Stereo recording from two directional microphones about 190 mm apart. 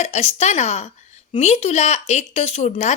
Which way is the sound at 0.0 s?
35° left (ahead or behind).